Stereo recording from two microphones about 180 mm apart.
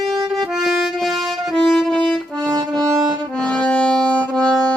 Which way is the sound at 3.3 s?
5° left (ahead or behind).